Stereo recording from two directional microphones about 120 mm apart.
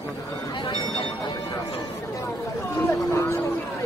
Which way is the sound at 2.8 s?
20° left (ahead or behind).